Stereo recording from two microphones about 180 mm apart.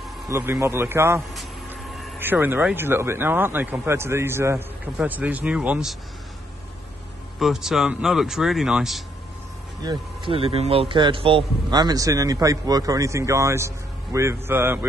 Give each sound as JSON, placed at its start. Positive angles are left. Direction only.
{"t": 0.3, "sound": "speech", "side_deg": -15}
{"t": 7.3, "sound": "speech", "side_deg": 0}
{"t": 9.8, "sound": "a man's voice", "side_deg": -30}